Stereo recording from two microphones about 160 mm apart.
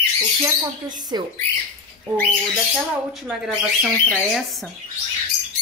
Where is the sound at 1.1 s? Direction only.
25° right (ahead or behind).